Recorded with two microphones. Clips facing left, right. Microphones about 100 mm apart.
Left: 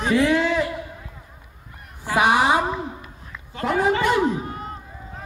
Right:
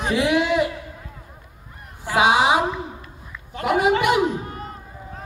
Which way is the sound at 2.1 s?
15° right (ahead or behind).